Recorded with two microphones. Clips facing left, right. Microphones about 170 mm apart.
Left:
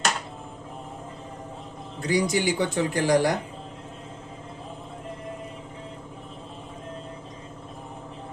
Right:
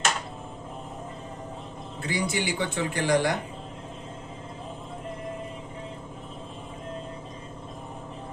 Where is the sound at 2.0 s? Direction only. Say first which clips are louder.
Left 5 dB; 45° left (ahead or behind).